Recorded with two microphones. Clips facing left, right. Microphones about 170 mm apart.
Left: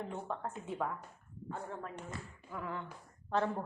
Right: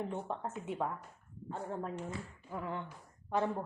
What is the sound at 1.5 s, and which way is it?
A woman's voice, 30° right (ahead or behind).